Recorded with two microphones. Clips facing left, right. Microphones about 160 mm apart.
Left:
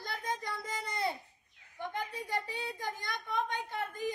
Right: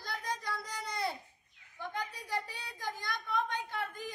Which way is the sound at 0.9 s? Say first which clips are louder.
Left 1 dB; 20° left (ahead or behind).